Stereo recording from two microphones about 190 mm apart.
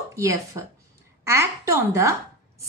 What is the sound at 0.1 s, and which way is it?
A woman's voice, 15° right (ahead or behind).